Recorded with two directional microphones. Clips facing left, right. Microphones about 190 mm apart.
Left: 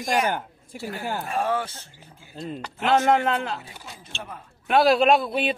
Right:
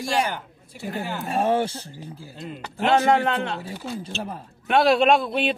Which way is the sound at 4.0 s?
35° right (ahead or behind).